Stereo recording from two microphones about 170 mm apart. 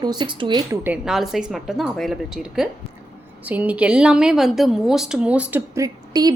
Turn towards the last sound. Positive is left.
turn(degrees=-25)  # may be behind; listen again after turning